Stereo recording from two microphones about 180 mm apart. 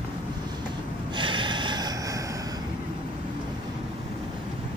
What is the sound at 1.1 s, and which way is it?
Snort, 25° right (ahead or behind).